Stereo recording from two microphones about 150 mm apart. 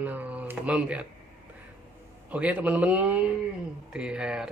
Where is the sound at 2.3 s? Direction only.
10° right (ahead or behind).